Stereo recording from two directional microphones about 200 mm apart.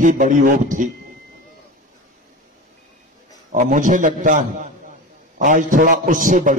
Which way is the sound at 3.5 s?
40° right (ahead or behind).